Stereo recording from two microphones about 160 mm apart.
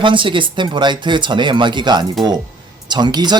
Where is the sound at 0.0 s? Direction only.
30° right (ahead or behind).